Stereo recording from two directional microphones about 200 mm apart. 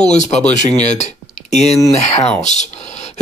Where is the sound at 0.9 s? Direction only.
35° left (ahead or behind).